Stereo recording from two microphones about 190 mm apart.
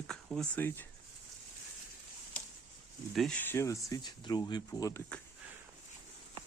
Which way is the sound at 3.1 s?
Centre (ahead or behind).